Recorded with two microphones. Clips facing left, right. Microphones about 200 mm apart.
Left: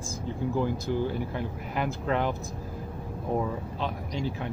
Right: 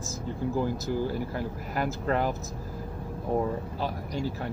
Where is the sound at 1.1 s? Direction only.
5° right (ahead or behind).